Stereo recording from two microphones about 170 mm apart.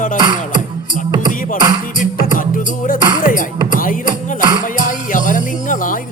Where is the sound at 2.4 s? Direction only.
50° left (ahead or behind).